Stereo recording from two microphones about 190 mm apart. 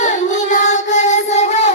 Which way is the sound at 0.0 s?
40° left (ahead or behind).